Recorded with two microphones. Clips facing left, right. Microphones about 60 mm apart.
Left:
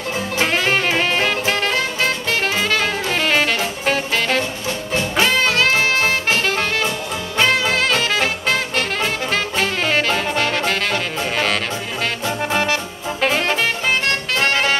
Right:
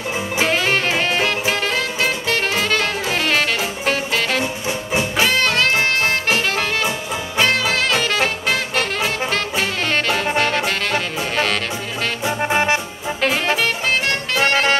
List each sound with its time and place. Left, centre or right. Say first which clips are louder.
0.5 s music: even; centre
4.4 s music: even; centre
5.1 s music: left 2 dB; centre
12.3 s music: right 3 dB; centre
13.2 s music: even; centre